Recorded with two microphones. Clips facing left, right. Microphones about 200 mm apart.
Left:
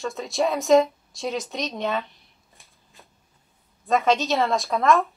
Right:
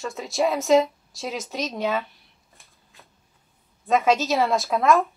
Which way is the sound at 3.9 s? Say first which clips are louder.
Right 1 dB; centre (ahead or behind).